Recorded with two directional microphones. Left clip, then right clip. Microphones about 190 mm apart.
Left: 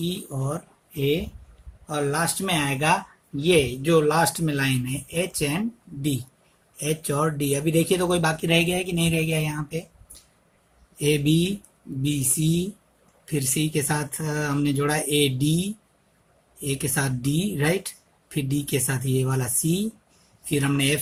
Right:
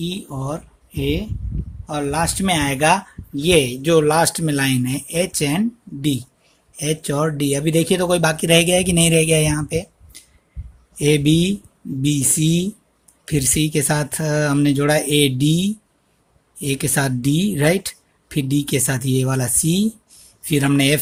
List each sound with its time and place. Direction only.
0.0 s speech: 40° right (ahead or behind)